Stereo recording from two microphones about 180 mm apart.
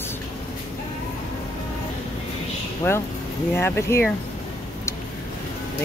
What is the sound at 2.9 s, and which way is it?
Speech, 10° left (ahead or behind).